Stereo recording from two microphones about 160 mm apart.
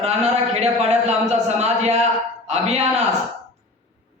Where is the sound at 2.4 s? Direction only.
40° right (ahead or behind).